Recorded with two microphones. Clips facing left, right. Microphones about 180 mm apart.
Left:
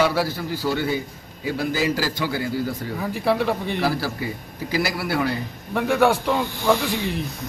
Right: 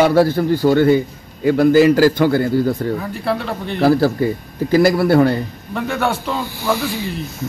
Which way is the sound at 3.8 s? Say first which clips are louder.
Right 16 dB; 55° right (ahead or behind).